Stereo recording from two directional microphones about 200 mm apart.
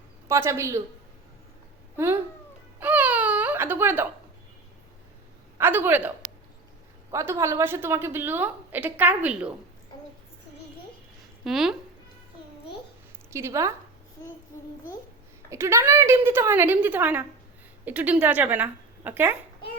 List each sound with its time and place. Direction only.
0.3 s a woman's voice: 15° right (ahead or behind)
2.7 s baby cry: 10° right (ahead or behind)
5.5 s a woman's voice: 10° right (ahead or behind)
7.1 s a woman's voice: 15° right (ahead or behind)
11.4 s speech: centre (ahead or behind)
13.3 s a woman's voice: 15° right (ahead or behind)
15.4 s a woman's voice: 15° right (ahead or behind)